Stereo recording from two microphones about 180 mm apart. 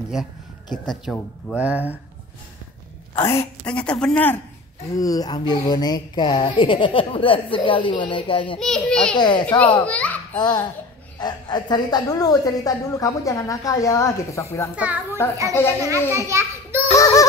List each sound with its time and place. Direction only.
0.1 s speech: 5° right (ahead or behind)
1.6 s a child's voice: 10° right (ahead or behind)
3.2 s a woman's voice: 15° left (ahead or behind)
3.6 s a woman's voice: 5° left (ahead or behind)
4.9 s speech: 20° left (ahead or behind)
8.5 s speech: 5° left (ahead or behind)
9.1 s speech: 25° left (ahead or behind)
9.6 s a child's voice: 10° left (ahead or behind)
11.1 s a woman's voice: 25° left (ahead or behind)
14.8 s a child's voice: 10° right (ahead or behind)
15.5 s a woman's voice: 15° left (ahead or behind)
16.3 s a sound: 15° right (ahead or behind)
16.9 s synthetic singing: 15° left (ahead or behind)